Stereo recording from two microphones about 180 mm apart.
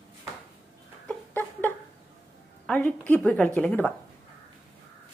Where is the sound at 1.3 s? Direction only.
10° left (ahead or behind).